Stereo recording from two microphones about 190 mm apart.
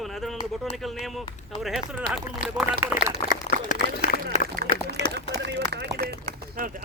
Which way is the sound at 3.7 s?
45° left (ahead or behind).